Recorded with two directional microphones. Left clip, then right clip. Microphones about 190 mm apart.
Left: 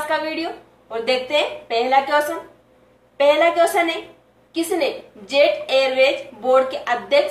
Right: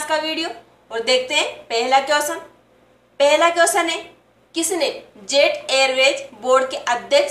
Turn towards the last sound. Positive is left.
turn(degrees=-15)  # may be behind; listen again after turning